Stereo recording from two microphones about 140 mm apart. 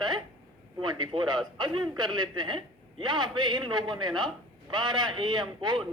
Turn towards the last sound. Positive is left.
turn(degrees=-35)  # may be behind; listen again after turning